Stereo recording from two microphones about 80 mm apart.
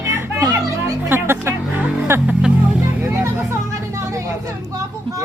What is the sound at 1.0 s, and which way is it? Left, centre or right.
Music, right.